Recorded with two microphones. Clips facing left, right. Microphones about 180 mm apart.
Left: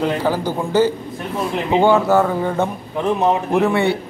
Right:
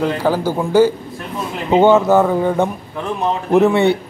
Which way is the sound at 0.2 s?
10° right (ahead or behind).